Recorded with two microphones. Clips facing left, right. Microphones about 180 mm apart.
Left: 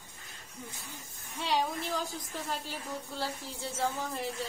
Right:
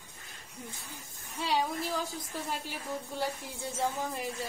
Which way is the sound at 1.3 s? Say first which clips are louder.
Even; centre (ahead or behind).